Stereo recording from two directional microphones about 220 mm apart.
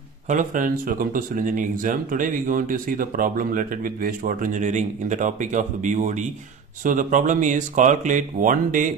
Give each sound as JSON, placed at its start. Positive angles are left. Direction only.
{"t": 0.3, "sound": "speech", "side_deg": -35}